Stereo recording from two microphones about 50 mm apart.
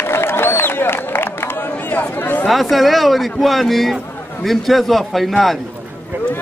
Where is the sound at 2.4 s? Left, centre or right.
Centre.